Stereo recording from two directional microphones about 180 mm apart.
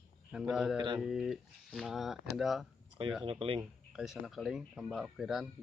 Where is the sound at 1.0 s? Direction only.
Centre (ahead or behind).